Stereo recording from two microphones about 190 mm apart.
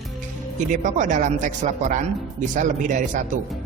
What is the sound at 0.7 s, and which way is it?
Speech, 40° right (ahead or behind).